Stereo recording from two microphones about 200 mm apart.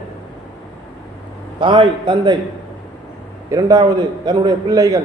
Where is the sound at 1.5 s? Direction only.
25° right (ahead or behind).